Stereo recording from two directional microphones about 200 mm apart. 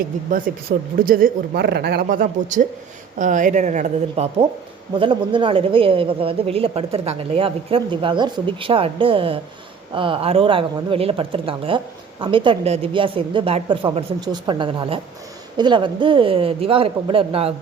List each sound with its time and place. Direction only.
0.3 s speech: 45° right (ahead or behind)
4.9 s speech: 25° right (ahead or behind)